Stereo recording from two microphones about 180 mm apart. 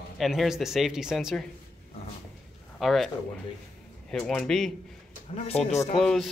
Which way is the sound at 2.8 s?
Centre (ahead or behind).